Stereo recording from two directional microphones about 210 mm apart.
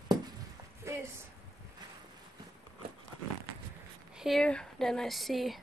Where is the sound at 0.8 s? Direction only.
15° right (ahead or behind).